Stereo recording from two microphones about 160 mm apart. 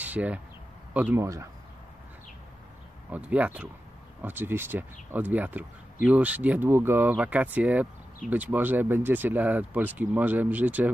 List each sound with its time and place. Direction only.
0.0 s speech: 10° right (ahead or behind)
3.1 s speech: 10° right (ahead or behind)